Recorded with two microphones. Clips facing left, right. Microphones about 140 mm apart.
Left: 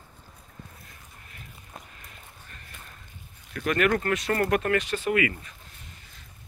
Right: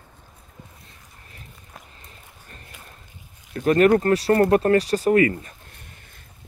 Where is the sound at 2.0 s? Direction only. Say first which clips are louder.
Right 1 dB; 35° right (ahead or behind).